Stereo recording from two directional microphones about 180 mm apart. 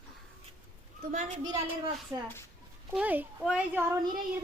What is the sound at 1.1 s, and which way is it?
Speech, 40° right (ahead or behind).